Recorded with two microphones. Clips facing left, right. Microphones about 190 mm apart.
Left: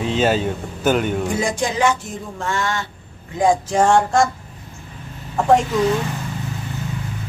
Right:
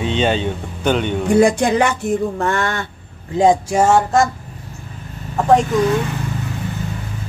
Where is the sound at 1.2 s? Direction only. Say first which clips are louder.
Right 8 dB; 60° right (ahead or behind).